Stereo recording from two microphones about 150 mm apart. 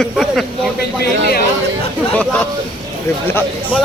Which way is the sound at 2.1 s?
10° left (ahead or behind).